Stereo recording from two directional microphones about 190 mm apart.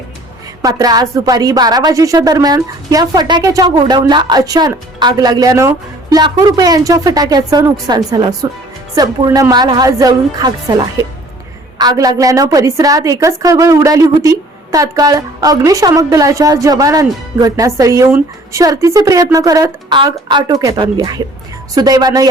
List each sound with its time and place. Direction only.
0.6 s a woman's voice: 20° right (ahead or behind)